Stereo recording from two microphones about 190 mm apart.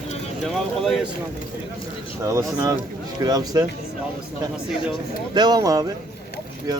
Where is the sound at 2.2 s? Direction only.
15° right (ahead or behind).